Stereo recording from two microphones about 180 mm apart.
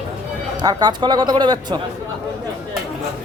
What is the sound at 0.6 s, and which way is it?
Speech, 20° right (ahead or behind).